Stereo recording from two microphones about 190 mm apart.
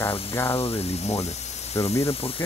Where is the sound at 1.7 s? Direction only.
15° left (ahead or behind).